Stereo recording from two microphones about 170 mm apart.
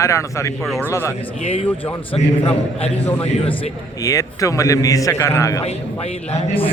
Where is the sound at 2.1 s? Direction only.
35° left (ahead or behind).